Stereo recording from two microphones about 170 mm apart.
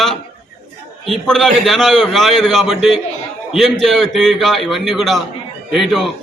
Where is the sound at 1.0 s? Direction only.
Centre (ahead or behind).